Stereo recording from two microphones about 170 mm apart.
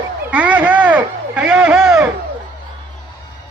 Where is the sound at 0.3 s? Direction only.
10° right (ahead or behind).